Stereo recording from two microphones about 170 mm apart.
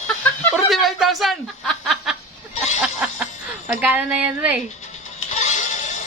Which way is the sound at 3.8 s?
10° right (ahead or behind).